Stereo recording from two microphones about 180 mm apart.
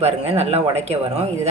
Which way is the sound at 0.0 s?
35° right (ahead or behind).